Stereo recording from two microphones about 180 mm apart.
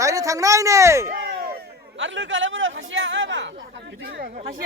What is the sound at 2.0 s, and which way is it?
A man's voice, 90° right.